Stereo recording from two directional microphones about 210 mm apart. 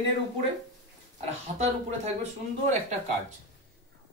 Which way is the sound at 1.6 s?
30° right (ahead or behind).